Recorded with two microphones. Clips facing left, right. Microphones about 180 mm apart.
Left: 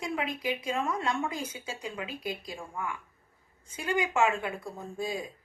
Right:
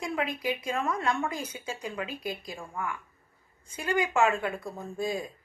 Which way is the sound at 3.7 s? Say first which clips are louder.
Right 1 dB; 15° left (ahead or behind).